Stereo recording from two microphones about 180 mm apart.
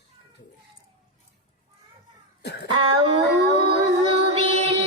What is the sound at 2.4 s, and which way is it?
Speech, 70° left (ahead or behind).